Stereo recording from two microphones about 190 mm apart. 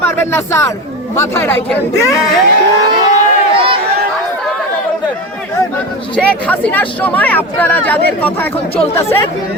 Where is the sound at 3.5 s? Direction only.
30° right (ahead or behind).